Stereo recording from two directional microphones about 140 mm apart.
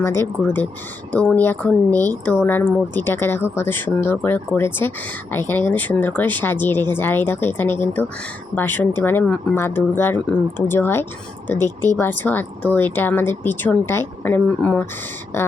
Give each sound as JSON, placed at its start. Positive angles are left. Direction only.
{"t": 0.0, "sound": "speech", "side_deg": 15}